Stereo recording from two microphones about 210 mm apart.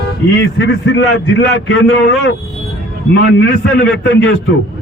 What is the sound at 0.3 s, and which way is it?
Speech, 55° left (ahead or behind).